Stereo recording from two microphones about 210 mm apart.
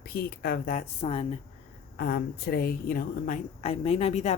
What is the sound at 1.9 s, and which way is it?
A woman's voice, 45° left (ahead or behind).